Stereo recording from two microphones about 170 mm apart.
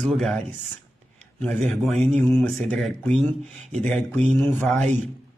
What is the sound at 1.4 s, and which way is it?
Speech, centre (ahead or behind).